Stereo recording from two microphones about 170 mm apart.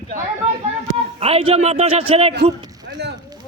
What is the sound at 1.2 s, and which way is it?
A man's voice, 35° right (ahead or behind).